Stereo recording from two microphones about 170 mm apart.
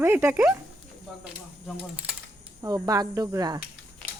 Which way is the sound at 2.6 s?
20° right (ahead or behind).